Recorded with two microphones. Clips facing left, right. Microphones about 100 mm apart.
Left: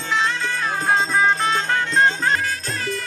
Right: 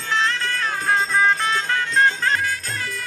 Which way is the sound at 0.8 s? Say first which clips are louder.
Left 1 dB; 20° left (ahead or behind).